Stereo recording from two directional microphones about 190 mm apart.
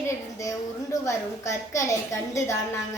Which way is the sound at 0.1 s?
15° left (ahead or behind).